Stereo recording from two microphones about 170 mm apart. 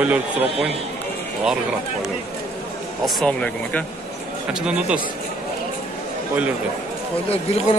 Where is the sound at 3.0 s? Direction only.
5° left (ahead or behind).